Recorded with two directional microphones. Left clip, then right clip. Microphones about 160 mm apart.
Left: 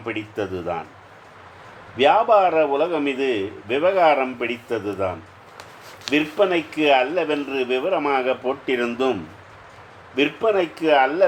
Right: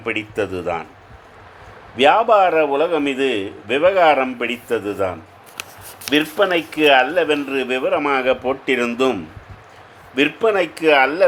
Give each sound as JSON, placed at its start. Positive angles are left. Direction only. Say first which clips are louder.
{"t": 0.0, "sound": "a man's voice", "louder": "right 5 dB", "side_deg": -35}
{"t": 2.0, "sound": "a man's voice", "louder": "right 3 dB", "side_deg": -30}
{"t": 10.2, "sound": "a man's voice", "louder": "right 3 dB", "side_deg": -35}